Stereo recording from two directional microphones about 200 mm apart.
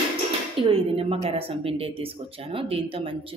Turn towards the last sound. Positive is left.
turn(degrees=-25)  # may be behind; listen again after turning